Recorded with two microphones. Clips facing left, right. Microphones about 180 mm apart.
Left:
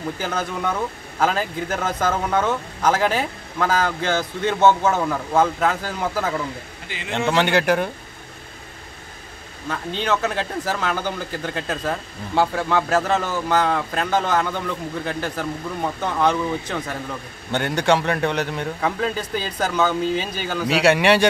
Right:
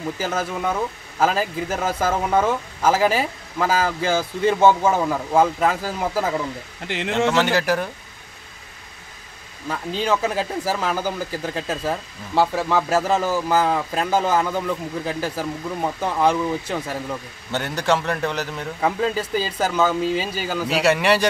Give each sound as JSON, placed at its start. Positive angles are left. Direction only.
{"t": 0.2, "sound": "a man's voice", "side_deg": -5}
{"t": 6.9, "sound": "speech", "side_deg": -80}
{"t": 7.5, "sound": "a man's voice", "side_deg": 0}
{"t": 9.7, "sound": "a man's voice", "side_deg": -10}